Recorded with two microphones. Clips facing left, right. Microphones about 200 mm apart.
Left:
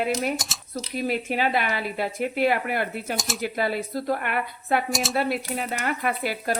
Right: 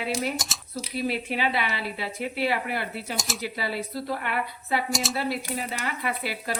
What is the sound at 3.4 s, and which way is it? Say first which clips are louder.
Speech: left 7 dB; 50° left (ahead or behind).